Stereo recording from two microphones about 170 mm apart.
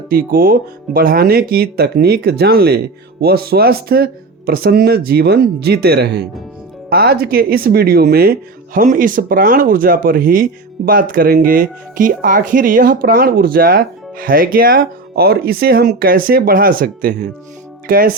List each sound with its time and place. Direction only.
0.1 s speech: 60° right (ahead or behind)